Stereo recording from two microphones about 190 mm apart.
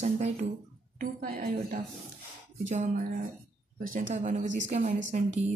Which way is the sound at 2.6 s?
40° right (ahead or behind).